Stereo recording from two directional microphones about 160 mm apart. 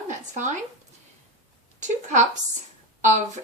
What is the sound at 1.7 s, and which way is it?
Speech, 50° right (ahead or behind).